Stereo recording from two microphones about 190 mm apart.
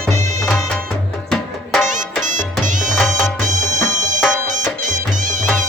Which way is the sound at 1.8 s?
40° right (ahead or behind).